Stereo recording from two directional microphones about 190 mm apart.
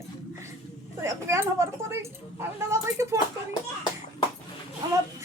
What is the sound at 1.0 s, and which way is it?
Speech, 15° right (ahead or behind).